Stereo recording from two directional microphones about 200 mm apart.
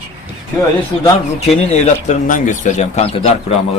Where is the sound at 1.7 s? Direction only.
35° left (ahead or behind).